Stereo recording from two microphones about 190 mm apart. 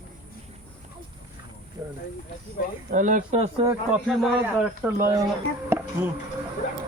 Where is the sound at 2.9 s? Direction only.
45° right (ahead or behind).